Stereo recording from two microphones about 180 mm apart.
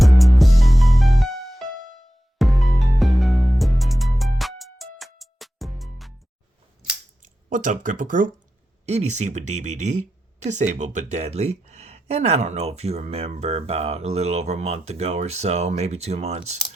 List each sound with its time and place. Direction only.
0.0 s music: centre (ahead or behind)
7.2 s speech: 45° right (ahead or behind)